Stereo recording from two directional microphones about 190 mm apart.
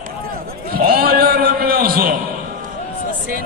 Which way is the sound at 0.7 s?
50° right (ahead or behind).